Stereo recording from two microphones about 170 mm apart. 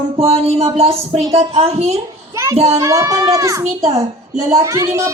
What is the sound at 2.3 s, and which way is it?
Child singing, 20° right (ahead or behind).